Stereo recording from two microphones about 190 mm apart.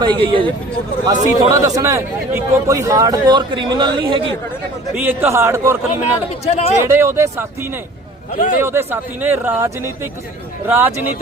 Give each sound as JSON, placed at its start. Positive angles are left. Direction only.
{"t": 0.0, "sound": "a man's voice", "side_deg": -25}
{"t": 4.9, "sound": "speech", "side_deg": -10}
{"t": 6.4, "sound": "speech", "side_deg": 35}
{"t": 6.8, "sound": "speech", "side_deg": -15}
{"t": 8.3, "sound": "speech", "side_deg": 40}
{"t": 8.6, "sound": "speech", "side_deg": -10}